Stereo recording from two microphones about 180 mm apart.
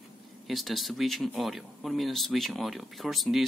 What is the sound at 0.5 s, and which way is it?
Speech, centre (ahead or behind).